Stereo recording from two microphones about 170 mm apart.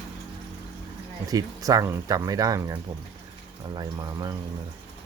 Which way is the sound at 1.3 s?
20° right (ahead or behind).